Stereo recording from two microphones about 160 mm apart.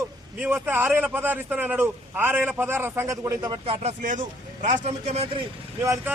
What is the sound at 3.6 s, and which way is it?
Speech, 45° right (ahead or behind).